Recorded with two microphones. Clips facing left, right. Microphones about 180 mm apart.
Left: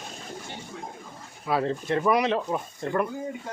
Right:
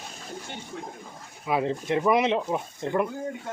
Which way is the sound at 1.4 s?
15° right (ahead or behind).